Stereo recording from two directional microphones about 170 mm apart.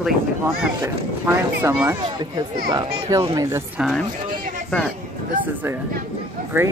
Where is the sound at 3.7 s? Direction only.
Centre (ahead or behind).